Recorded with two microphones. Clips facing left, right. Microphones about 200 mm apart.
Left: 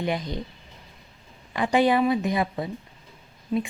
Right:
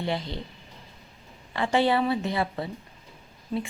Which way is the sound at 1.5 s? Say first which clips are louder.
Left 3 dB; 15° left (ahead or behind).